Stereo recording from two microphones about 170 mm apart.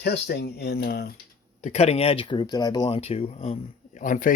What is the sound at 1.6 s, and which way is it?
Speech, 40° left (ahead or behind).